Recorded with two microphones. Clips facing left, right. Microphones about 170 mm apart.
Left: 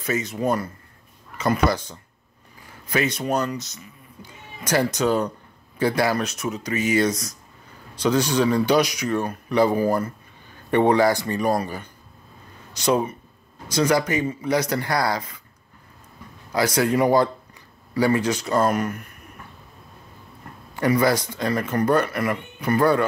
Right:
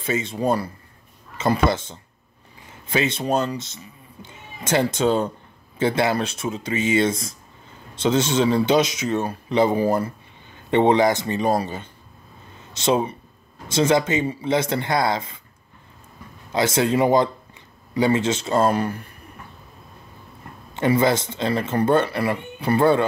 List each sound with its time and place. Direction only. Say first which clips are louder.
0.0 s speech: right 1 dB; 25° right (ahead or behind)
16.5 s speech: right 1 dB; 25° right (ahead or behind)
20.7 s speech: right 1 dB; 25° right (ahead or behind)